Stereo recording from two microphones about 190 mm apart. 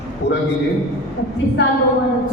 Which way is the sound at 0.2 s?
65° left (ahead or behind).